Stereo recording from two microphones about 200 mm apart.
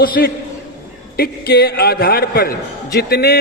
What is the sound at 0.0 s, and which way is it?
A man's voice, 45° left (ahead or behind).